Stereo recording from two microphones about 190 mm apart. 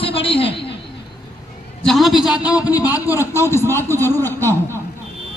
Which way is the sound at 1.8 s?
Centre (ahead or behind).